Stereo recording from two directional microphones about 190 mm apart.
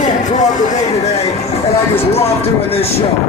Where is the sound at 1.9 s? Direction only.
35° left (ahead or behind).